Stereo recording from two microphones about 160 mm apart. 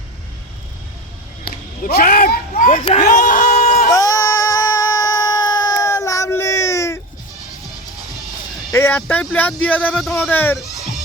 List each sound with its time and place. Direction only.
1.8 s speech: 75° left (ahead or behind); by 2.8 s 55° left (ahead or behind)
3.1 s a sound: 55° left (ahead or behind)
3.9 s baby cry: 20° left (ahead or behind)
8.7 s speech: 15° left (ahead or behind)